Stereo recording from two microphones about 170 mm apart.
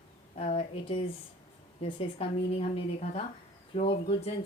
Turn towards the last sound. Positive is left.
turn(degrees=35)  # may be behind; listen again after turning